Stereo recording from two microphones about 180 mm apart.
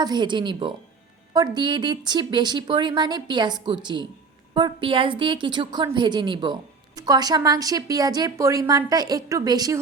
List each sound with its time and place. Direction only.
0.0 s a woman's voice: 25° right (ahead or behind)
4.5 s a woman's voice: 25° right (ahead or behind)